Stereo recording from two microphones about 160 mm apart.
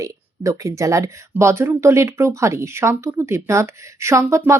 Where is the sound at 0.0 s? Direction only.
20° right (ahead or behind).